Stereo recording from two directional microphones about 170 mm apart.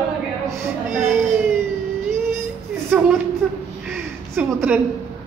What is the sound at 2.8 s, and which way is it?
Speech, 5° right (ahead or behind).